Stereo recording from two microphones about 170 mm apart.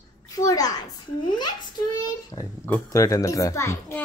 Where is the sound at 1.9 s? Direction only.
20° left (ahead or behind).